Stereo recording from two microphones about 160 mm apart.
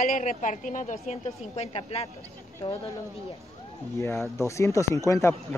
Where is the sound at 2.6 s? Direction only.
20° left (ahead or behind).